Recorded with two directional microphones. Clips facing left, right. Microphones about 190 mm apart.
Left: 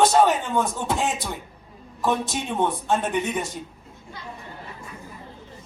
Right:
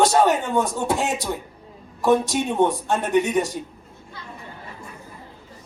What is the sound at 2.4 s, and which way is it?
Speech, 15° right (ahead or behind).